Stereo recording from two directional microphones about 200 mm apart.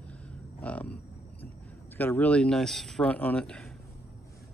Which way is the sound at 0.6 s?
5° left (ahead or behind).